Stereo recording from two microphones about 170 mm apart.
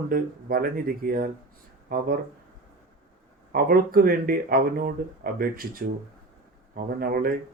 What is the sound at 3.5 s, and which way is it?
Speech, 60° right (ahead or behind).